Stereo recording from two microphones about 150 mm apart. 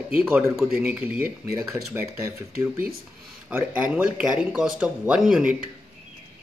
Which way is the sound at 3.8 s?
5° right (ahead or behind).